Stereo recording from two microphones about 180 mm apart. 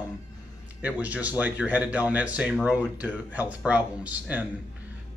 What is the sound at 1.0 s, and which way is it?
Speech, 10° right (ahead or behind).